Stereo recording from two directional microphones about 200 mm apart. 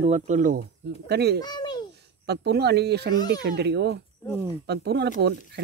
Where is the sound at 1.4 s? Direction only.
20° left (ahead or behind).